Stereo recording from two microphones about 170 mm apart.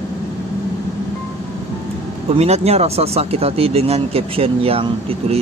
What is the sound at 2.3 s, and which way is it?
Speech, 40° right (ahead or behind).